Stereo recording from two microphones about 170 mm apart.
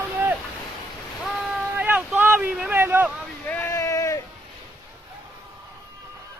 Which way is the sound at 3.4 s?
10° left (ahead or behind).